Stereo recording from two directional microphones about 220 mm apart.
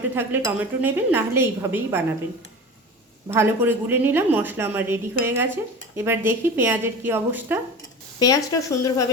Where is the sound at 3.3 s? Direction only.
10° right (ahead or behind).